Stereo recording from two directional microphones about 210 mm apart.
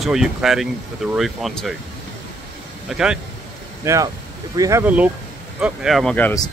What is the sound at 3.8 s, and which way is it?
Speech, 15° right (ahead or behind).